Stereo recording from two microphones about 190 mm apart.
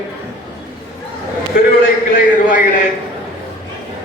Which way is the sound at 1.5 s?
50° left (ahead or behind).